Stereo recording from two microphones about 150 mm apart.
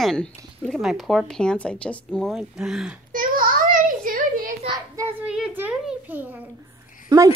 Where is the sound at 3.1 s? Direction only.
70° right (ahead or behind).